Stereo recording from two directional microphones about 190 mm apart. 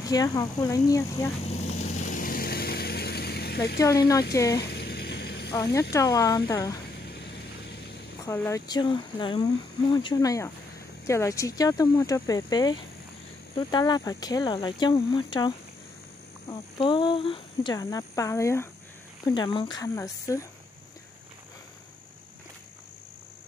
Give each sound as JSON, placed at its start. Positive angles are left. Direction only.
{"t": 0.0, "sound": "speech", "side_deg": 20}
{"t": 1.4, "sound": "vehicle", "side_deg": 35}
{"t": 4.6, "sound": "a sound", "side_deg": 60}
{"t": 5.8, "sound": "speech", "side_deg": 15}
{"t": 8.2, "sound": "speech", "side_deg": 15}